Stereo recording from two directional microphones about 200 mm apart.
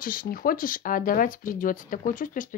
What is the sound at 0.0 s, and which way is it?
Speech, 45° left (ahead or behind).